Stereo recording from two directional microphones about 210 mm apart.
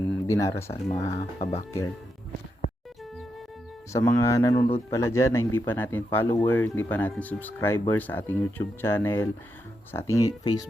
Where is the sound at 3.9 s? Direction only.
15° left (ahead or behind).